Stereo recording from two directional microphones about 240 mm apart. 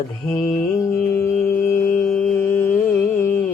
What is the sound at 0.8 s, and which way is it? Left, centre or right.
Music, centre.